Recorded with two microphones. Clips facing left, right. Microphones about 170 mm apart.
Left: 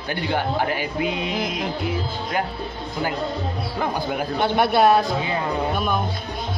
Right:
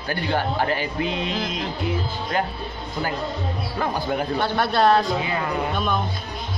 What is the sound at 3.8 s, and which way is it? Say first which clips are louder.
Speech: even; 15° left (ahead or behind).